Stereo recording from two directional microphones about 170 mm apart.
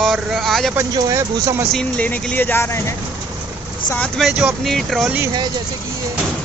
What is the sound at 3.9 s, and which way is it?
Speech, 5° left (ahead or behind).